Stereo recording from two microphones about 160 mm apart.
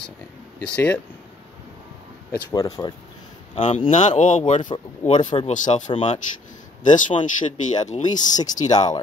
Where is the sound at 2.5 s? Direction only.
25° left (ahead or behind).